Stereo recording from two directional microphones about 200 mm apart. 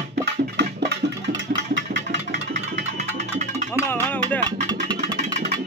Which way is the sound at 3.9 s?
10° left (ahead or behind).